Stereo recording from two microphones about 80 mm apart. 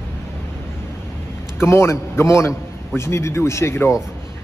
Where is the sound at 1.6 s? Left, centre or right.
Left.